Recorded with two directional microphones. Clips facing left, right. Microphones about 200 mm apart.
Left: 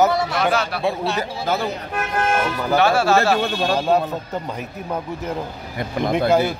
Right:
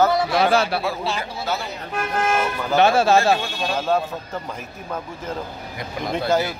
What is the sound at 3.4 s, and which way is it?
Speech, 60° left (ahead or behind).